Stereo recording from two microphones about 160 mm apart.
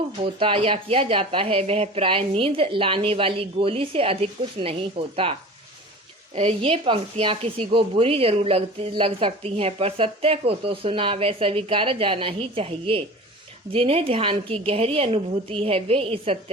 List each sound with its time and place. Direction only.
0.3 s speech: 35° right (ahead or behind)